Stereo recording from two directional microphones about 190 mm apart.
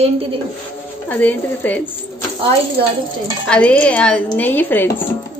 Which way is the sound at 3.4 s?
5° left (ahead or behind).